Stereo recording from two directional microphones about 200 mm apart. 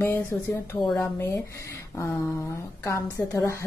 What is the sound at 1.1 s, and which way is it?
Speech, 15° left (ahead or behind).